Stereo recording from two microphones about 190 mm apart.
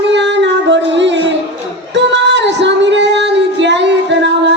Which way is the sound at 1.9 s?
65° right (ahead or behind).